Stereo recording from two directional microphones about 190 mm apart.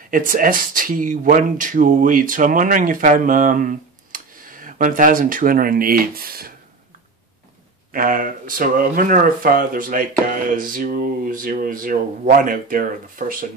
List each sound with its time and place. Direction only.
0.1 s speech: 45° right (ahead or behind)
7.9 s speech: 45° right (ahead or behind)